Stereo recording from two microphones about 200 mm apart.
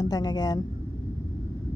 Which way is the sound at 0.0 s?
20° left (ahead or behind).